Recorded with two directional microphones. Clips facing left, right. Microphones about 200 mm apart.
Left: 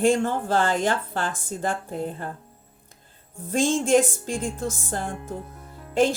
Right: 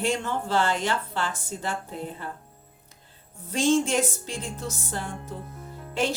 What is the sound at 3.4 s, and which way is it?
Speech, 50° left (ahead or behind).